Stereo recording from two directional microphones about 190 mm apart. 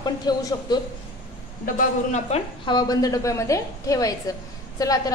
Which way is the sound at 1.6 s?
40° left (ahead or behind).